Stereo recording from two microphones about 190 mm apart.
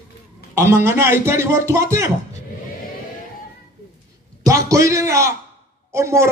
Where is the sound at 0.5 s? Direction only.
15° right (ahead or behind).